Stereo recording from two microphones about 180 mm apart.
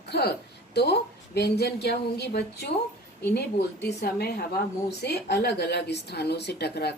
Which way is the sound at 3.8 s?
65° left (ahead or behind).